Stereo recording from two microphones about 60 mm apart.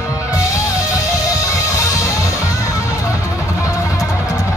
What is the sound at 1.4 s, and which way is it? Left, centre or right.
Music, left.